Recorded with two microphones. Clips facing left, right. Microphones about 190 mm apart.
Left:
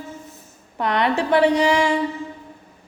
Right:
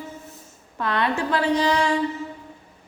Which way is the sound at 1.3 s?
20° left (ahead or behind).